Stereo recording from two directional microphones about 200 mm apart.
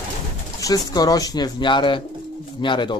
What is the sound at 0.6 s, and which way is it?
Speech, 20° left (ahead or behind).